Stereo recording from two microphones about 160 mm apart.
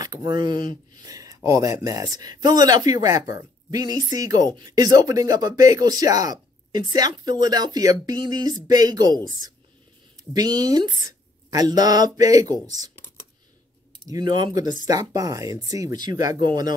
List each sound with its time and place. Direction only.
0.0 s a woman's voice: 25° right (ahead or behind)
14.0 s speech: 25° right (ahead or behind)